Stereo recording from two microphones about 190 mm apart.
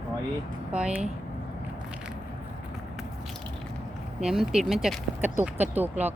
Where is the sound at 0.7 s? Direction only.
5° right (ahead or behind).